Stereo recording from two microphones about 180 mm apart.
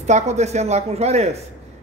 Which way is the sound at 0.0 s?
40° right (ahead or behind).